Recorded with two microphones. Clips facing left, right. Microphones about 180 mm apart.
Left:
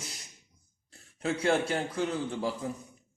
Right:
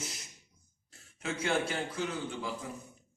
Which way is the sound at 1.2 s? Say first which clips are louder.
Left 7 dB; 35° left (ahead or behind).